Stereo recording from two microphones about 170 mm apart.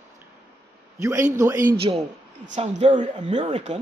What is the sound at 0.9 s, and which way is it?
Speech, 20° right (ahead or behind).